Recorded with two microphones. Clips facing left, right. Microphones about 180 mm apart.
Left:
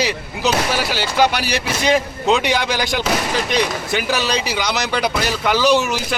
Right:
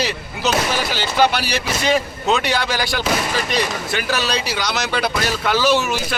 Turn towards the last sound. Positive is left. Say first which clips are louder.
# left 2 dB
turn(degrees=15)  # may be behind; listen again after turning